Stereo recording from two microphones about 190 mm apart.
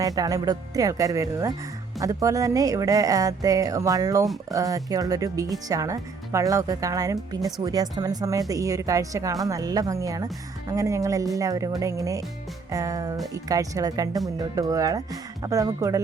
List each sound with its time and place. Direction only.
0.0 s speech: 20° right (ahead or behind)